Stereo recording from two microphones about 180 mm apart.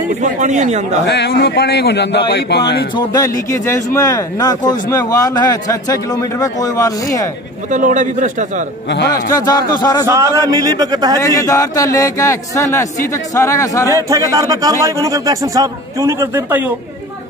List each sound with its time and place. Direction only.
0.2 s speech: 40° right (ahead or behind)
1.0 s a man's voice: 70° left (ahead or behind)
3.1 s a man's voice: 15° left (ahead or behind)
7.7 s a man's voice: 45° right (ahead or behind)
9.1 s a man's voice: 20° left (ahead or behind)
10.0 s a man's voice: 15° right (ahead or behind)
11.1 s a man's voice: 15° left (ahead or behind)
14.0 s a man's voice: 20° right (ahead or behind)